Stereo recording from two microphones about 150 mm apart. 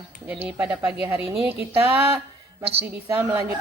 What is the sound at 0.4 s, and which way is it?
Speech, 10° right (ahead or behind).